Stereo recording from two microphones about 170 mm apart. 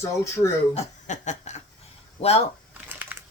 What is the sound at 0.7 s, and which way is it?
Chuckle, 45° left (ahead or behind).